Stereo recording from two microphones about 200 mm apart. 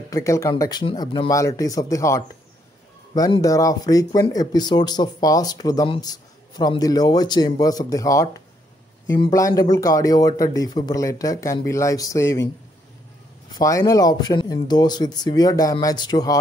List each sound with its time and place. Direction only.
0.1 s speech: 15° left (ahead or behind)
13.5 s speech: 15° left (ahead or behind)